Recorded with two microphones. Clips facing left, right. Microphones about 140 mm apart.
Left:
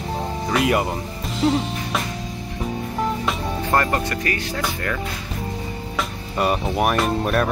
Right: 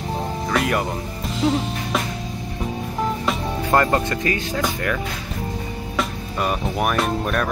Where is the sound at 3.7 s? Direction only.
20° right (ahead or behind).